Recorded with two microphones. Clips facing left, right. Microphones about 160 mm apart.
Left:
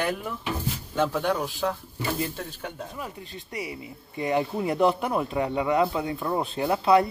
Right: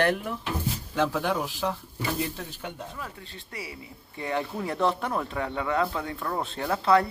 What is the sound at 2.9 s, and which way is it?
Speech, 15° left (ahead or behind).